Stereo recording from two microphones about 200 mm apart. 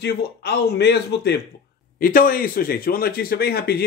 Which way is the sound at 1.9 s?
45° left (ahead or behind).